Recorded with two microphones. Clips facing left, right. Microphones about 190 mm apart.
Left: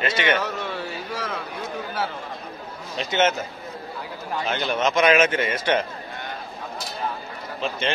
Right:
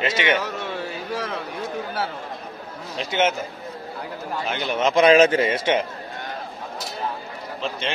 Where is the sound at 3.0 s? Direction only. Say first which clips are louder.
Even; 10° right (ahead or behind).